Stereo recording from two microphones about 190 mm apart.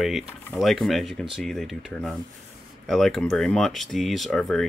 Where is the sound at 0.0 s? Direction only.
Centre (ahead or behind).